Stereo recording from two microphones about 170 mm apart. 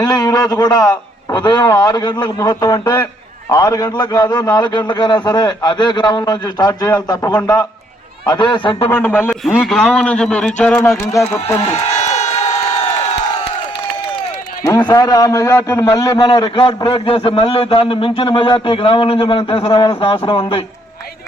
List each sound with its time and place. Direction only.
0.0 s a man's voice: 20° left (ahead or behind)
8.9 s a man's voice: 15° left (ahead or behind)
9.3 s a man's voice: centre (ahead or behind); by 11.3 s 15° left (ahead or behind)
11.7 s crowd: 40° left (ahead or behind)
14.8 s a man's voice: 20° left (ahead or behind)